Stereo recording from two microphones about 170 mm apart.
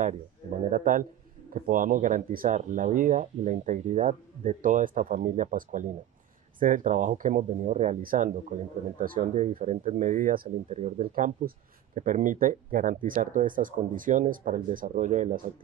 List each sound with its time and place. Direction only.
0.7 s speech: 50° right (ahead or behind)